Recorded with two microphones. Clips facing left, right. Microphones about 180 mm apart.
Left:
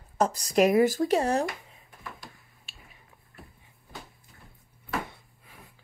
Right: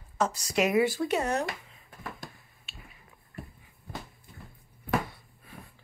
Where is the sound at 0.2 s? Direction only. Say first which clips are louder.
Left 4 dB; 40° left (ahead or behind).